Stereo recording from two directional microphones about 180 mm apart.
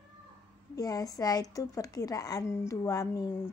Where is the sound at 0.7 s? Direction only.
20° left (ahead or behind).